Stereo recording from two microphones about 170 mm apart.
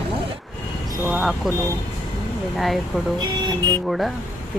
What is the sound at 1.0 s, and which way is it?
Speech, centre (ahead or behind).